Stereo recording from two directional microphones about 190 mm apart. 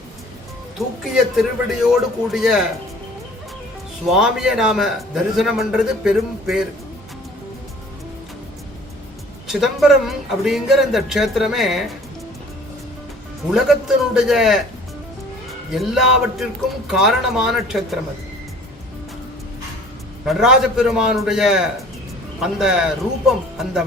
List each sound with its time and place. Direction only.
0.8 s a man's voice: centre (ahead or behind)
4.1 s a man's voice: centre (ahead or behind)
9.5 s a man's voice: centre (ahead or behind)
13.5 s a man's voice: centre (ahead or behind)
15.7 s a man's voice: centre (ahead or behind)
20.2 s a man's voice: 5° right (ahead or behind)